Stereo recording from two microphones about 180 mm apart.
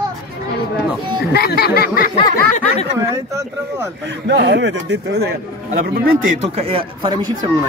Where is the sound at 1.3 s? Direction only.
60° left (ahead or behind).